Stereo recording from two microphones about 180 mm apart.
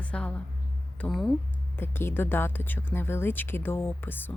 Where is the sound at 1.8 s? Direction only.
10° left (ahead or behind).